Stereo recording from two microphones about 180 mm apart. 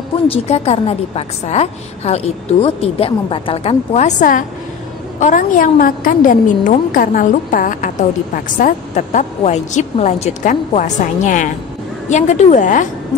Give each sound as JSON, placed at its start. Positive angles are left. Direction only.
{"t": 0.3, "sound": "a woman's voice", "side_deg": 35}